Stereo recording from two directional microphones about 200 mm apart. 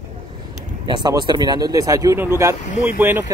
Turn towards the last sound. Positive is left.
turn(degrees=-10)  # may be behind; listen again after turning